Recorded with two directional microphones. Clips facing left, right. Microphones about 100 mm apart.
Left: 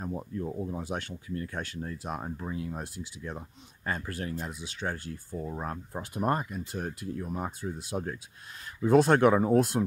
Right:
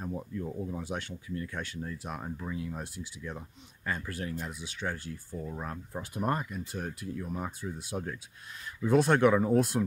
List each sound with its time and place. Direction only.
0.0 s speech: 35° left (ahead or behind)
2.5 s speech: 40° left (ahead or behind)
4.5 s speech: 25° left (ahead or behind)
4.8 s speech: 40° left (ahead or behind)